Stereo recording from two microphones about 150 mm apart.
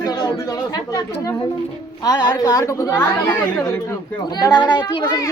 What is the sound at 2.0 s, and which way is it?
Speech, 25° left (ahead or behind).